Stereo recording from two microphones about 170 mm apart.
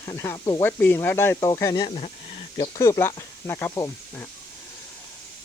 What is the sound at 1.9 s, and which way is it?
Speech, 40° left (ahead or behind).